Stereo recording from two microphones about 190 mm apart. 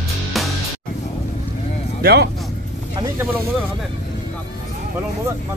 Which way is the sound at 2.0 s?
55° right (ahead or behind).